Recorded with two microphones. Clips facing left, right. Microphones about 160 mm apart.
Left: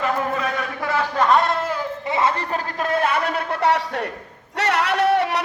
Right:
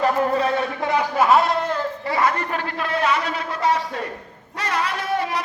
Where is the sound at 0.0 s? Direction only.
30° right (ahead or behind); by 1.8 s 5° left (ahead or behind).